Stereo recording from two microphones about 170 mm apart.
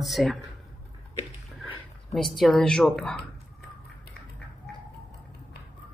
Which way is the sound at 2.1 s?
Centre (ahead or behind).